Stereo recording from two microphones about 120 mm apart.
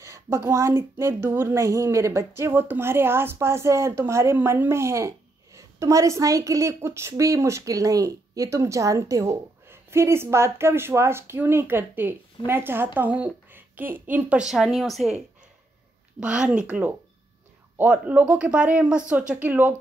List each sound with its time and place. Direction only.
0.0 s a woman's voice: 25° right (ahead or behind); by 15.1 s centre (ahead or behind)
16.2 s a woman's voice: 10° right (ahead or behind)